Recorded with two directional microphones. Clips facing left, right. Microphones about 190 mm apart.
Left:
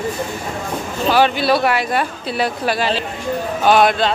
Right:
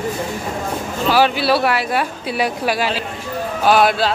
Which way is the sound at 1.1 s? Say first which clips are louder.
Even; 5° right (ahead or behind).